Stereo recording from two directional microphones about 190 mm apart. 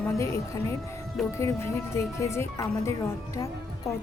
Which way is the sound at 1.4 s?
15° left (ahead or behind).